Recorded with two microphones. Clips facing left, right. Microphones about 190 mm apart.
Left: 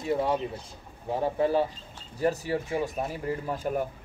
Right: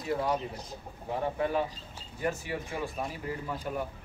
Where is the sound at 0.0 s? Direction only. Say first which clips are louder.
Left 4 dB; 25° left (ahead or behind).